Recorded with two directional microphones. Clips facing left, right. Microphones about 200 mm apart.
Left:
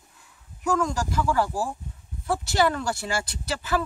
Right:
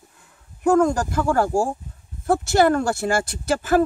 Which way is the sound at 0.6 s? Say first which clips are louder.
Right 8 dB; 55° right (ahead or behind).